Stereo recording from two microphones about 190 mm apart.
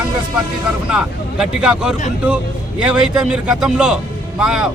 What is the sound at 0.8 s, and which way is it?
A man's voice, 5° right (ahead or behind).